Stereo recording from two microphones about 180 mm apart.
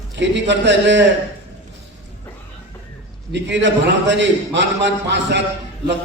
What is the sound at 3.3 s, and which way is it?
A man's voice, 75° right (ahead or behind).